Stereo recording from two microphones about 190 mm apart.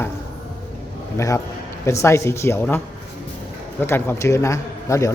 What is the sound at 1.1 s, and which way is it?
A man's voice, 15° left (ahead or behind).